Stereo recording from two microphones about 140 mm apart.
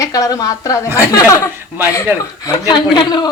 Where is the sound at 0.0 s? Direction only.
25° left (ahead or behind).